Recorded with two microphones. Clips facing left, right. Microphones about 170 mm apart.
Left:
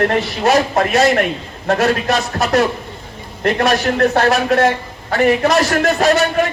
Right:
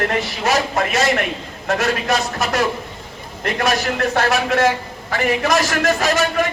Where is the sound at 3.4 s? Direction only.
45° left (ahead or behind).